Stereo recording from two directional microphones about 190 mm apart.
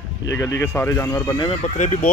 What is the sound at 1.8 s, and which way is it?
Speech, 40° left (ahead or behind).